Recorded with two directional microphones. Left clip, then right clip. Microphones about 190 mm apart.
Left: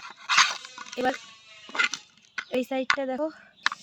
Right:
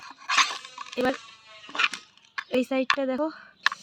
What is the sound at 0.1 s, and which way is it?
Dog, 30° left (ahead or behind).